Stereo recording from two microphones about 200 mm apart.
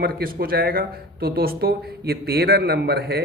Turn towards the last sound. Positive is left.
turn(degrees=-55)  # may be behind; listen again after turning